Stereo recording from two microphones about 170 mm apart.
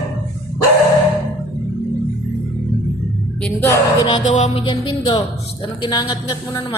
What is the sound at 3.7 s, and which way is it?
Speech, 25° left (ahead or behind).